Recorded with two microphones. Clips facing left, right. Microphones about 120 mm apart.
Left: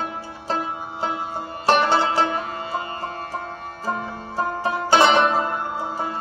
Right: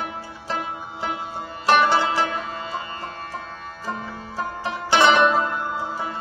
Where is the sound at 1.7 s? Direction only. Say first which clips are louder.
Even; 40° left (ahead or behind).